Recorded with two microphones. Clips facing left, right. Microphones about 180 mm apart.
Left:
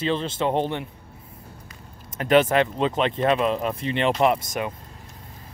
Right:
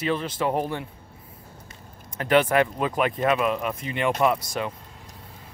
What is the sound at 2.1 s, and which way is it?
Speech, 20° left (ahead or behind).